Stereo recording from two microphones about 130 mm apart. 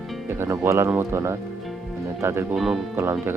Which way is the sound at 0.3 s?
20° right (ahead or behind).